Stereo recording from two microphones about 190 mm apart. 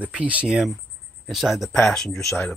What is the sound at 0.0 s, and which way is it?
Speech, 5° right (ahead or behind).